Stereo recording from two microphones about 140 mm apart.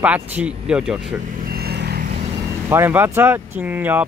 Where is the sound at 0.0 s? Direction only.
10° right (ahead or behind).